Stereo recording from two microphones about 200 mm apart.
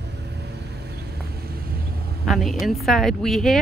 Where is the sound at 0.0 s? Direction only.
55° right (ahead or behind).